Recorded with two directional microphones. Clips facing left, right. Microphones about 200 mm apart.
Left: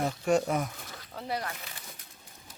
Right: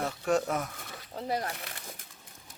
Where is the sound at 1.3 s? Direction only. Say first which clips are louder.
Right 2 dB; 40° right (ahead or behind).